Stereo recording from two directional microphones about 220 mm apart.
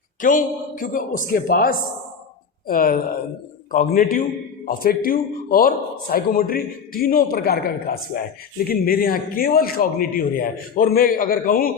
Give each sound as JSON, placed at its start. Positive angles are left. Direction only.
{"t": 0.2, "sound": "a man's voice", "side_deg": 35}